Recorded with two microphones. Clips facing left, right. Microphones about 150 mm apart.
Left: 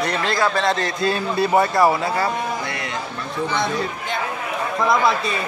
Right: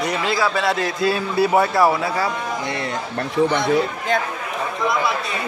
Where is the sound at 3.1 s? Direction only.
60° right (ahead or behind).